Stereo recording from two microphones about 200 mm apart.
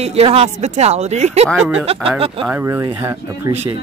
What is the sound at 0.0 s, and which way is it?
Speech, 30° right (ahead or behind).